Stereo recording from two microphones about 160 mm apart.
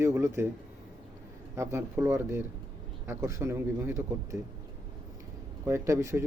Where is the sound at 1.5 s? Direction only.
15° right (ahead or behind).